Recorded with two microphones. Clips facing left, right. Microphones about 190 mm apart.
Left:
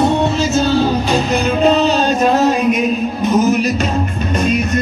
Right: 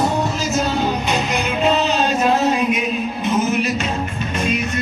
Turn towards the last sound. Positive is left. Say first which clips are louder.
# left 5 dB
turn(degrees=40)  # may be behind; listen again after turning